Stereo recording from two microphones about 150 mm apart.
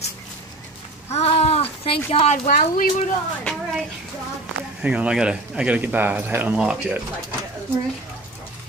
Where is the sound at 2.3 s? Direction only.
65° left (ahead or behind).